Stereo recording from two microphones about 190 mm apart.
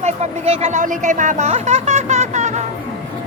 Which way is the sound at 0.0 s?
35° right (ahead or behind).